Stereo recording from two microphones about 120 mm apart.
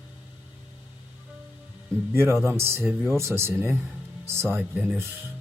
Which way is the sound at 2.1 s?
20° right (ahead or behind).